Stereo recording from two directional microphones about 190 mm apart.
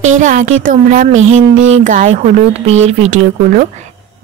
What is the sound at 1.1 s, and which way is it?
Speech, 90° right.